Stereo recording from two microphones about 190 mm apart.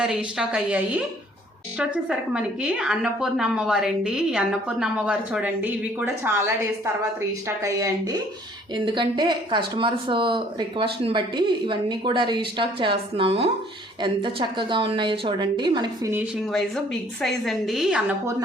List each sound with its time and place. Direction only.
0.3 s a woman's voice: 5° right (ahead or behind); by 16.1 s 25° right (ahead or behind)
16.5 s a woman's voice: centre (ahead or behind)